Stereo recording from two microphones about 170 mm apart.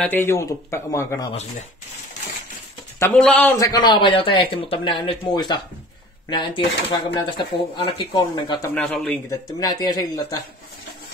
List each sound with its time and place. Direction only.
0.0 s speech: 10° left (ahead or behind)
3.0 s speech: 5° left (ahead or behind)
3.5 s speech: 20° left (ahead or behind)
8.6 s speech: 10° left (ahead or behind)
9.3 s speech: 20° left (ahead or behind)